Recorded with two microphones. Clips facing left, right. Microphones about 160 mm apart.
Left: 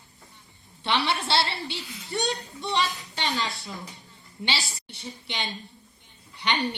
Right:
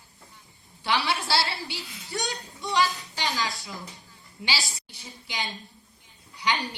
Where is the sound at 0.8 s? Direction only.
25° left (ahead or behind).